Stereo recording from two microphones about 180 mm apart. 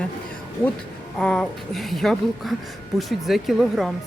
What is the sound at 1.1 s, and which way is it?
Speech, 5° left (ahead or behind).